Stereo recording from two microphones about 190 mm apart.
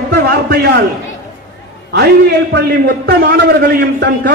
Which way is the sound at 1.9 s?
60° right (ahead or behind).